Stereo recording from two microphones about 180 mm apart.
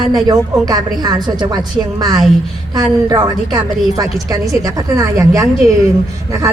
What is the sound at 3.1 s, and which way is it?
A woman's voice, 20° right (ahead or behind).